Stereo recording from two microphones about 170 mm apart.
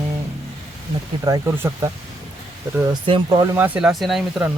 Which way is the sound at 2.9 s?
25° right (ahead or behind).